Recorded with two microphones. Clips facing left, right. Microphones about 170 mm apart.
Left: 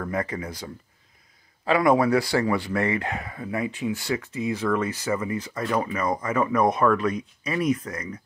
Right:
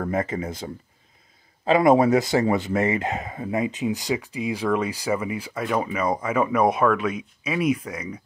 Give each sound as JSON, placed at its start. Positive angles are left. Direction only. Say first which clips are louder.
{"t": 0.1, "sound": "speech", "louder": "right 3 dB", "side_deg": -25}
{"t": 1.7, "sound": "speech", "louder": "right 3 dB", "side_deg": -20}